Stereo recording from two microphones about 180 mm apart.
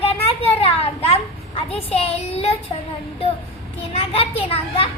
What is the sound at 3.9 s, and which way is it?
A child's voice, 35° left (ahead or behind).